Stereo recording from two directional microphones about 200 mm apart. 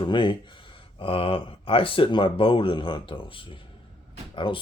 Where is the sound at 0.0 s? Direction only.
25° left (ahead or behind).